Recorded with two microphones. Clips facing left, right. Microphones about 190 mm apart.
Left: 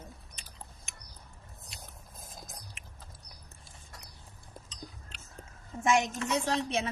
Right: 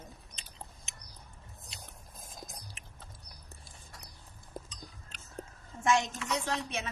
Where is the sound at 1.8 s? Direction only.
Centre (ahead or behind).